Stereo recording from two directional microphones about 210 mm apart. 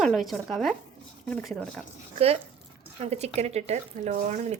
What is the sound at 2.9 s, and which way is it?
Speech, 30° right (ahead or behind).